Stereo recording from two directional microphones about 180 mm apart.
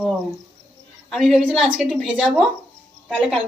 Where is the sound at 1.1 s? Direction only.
Centre (ahead or behind).